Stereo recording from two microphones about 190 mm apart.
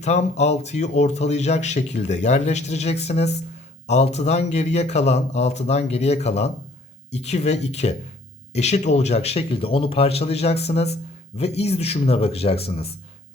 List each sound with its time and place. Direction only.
0.0 s speech: 35° left (ahead or behind)